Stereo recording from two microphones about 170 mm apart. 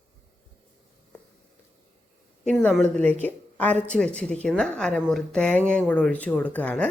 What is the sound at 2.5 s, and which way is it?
Speech, centre (ahead or behind).